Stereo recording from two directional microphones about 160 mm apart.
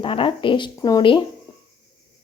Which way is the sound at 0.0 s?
35° left (ahead or behind).